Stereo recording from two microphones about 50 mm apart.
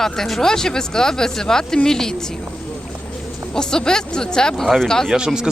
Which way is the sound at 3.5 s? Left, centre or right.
Centre.